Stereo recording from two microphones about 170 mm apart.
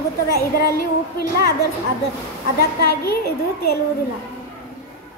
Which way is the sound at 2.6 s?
65° left (ahead or behind).